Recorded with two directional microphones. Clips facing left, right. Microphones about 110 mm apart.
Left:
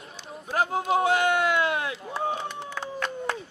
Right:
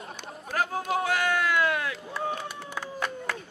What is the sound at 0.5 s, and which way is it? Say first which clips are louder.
Run: left 4 dB; 25° left (ahead or behind).